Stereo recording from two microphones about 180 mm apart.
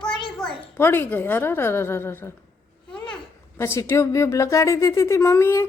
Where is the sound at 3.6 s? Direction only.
15° left (ahead or behind).